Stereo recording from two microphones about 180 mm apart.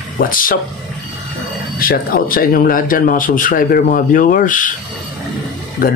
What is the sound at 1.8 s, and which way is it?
A man's voice, 55° left (ahead or behind).